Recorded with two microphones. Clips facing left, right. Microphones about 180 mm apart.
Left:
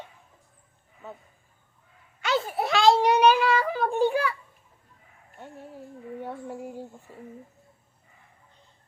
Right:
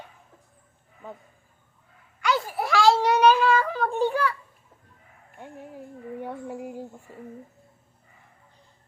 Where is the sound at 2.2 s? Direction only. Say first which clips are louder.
Even; 25° left (ahead or behind).